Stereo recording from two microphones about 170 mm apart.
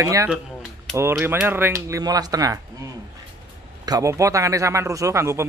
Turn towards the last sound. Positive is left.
turn(degrees=-15)  # may be behind; listen again after turning